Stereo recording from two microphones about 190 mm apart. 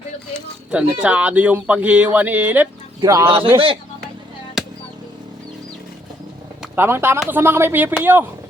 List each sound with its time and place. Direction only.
0.7 s speech: 5° right (ahead or behind)
3.2 s a man's voice: 30° right (ahead or behind)
4.6 s a sound: centre (ahead or behind)
6.6 s speech: 10° right (ahead or behind)